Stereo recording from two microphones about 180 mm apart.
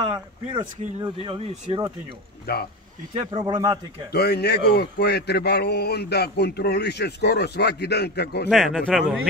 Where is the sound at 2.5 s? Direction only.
60° left (ahead or behind).